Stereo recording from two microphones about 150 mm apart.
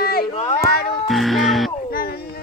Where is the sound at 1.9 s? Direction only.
85° left.